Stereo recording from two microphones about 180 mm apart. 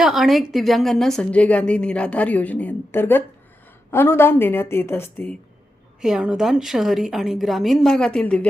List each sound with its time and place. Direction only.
0.0 s a woman's voice: centre (ahead or behind)
6.0 s a woman's voice: 5° right (ahead or behind)